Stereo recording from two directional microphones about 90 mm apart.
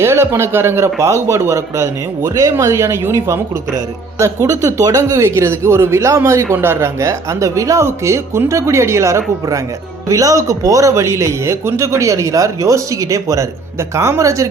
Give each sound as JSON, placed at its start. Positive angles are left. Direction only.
{"t": 0.0, "sound": "a man's voice", "side_deg": -30}